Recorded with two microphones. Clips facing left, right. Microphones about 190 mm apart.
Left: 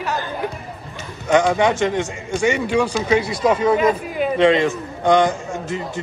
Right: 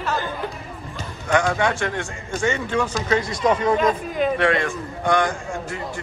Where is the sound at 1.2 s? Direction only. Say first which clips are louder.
Left 5 dB; 20° left (ahead or behind).